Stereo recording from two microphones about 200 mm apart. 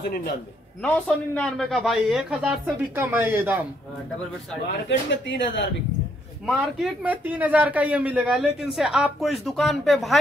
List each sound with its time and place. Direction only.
0.8 s a man's voice: 5° left (ahead or behind); by 3.6 s 10° right (ahead or behind)
4.6 s speech: 60° left (ahead or behind)
6.4 s a man's voice: 5° right (ahead or behind)